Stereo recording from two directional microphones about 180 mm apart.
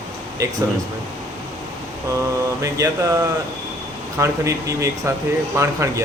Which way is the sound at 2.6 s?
20° right (ahead or behind).